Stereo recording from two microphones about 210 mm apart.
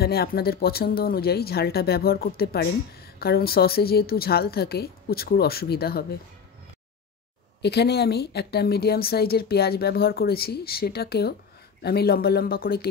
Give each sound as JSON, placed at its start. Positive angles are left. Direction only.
{"t": 0.0, "sound": "a woman's voice", "side_deg": 50}
{"t": 7.6, "sound": "a woman's voice", "side_deg": 50}